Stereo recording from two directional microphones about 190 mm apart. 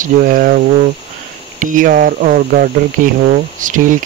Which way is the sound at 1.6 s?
45° right (ahead or behind).